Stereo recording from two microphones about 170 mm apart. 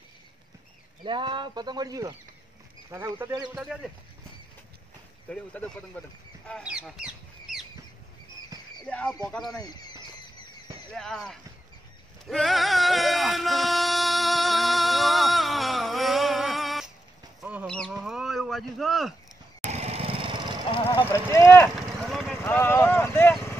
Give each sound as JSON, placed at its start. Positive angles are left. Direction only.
{"t": 1.0, "sound": "speech", "side_deg": -30}
{"t": 3.3, "sound": "speech", "side_deg": -25}
{"t": 5.3, "sound": "speech", "side_deg": 5}
{"t": 6.6, "sound": "speech", "side_deg": -5}
{"t": 8.8, "sound": "speech", "side_deg": 5}
{"t": 9.6, "sound": "speech", "side_deg": 25}
{"t": 10.9, "sound": "speech", "side_deg": 5}
{"t": 12.3, "sound": "music", "side_deg": 0}
{"t": 17.4, "sound": "fowl", "side_deg": -10}
{"t": 17.6, "sound": "a sound", "side_deg": 0}
{"t": 19.7, "sound": "a sound", "side_deg": -40}
{"t": 20.7, "sound": "a sound", "side_deg": 35}
{"t": 21.0, "sound": "speech", "side_deg": 15}
{"t": 21.7, "sound": "clip-clop", "side_deg": 0}